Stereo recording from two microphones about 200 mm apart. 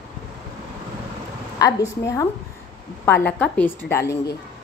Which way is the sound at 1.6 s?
15° left (ahead or behind).